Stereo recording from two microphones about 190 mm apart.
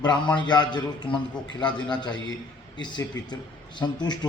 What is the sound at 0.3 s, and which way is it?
A man's voice, 25° left (ahead or behind).